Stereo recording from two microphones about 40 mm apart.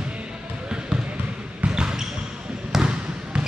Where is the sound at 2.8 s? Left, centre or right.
Right.